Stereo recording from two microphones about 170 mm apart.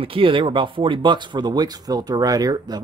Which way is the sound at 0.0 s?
30° right (ahead or behind).